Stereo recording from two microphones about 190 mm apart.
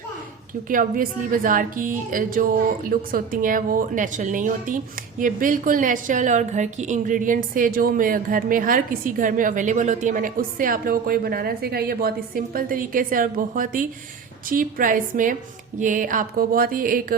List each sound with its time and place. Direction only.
0.7 s a woman's voice: 45° right (ahead or behind)